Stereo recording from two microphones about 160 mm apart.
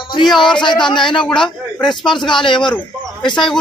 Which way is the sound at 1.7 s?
30° left (ahead or behind).